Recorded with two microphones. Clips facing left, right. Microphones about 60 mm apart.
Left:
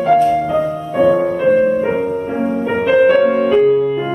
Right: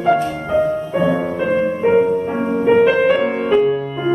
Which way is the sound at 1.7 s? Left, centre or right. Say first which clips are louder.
Right 2 dB; centre.